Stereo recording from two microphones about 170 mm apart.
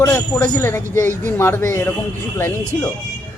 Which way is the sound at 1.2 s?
15° left (ahead or behind).